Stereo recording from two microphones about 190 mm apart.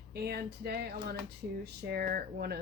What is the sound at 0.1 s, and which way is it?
Speech, 55° right (ahead or behind).